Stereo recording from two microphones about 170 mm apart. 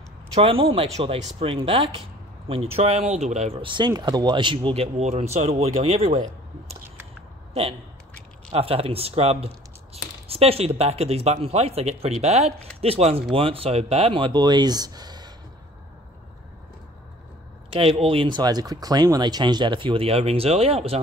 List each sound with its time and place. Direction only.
0.3 s speech: 35° right (ahead or behind)
8.5 s speech: 35° right (ahead or behind)
17.7 s speech: 35° right (ahead or behind)